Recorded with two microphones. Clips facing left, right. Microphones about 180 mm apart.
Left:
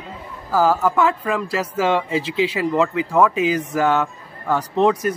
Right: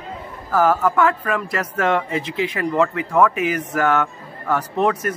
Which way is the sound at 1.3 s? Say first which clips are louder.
Left 1 dB; 25° left (ahead or behind).